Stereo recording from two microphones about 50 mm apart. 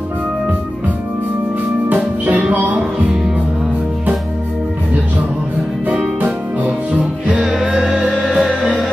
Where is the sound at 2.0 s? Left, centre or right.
Right.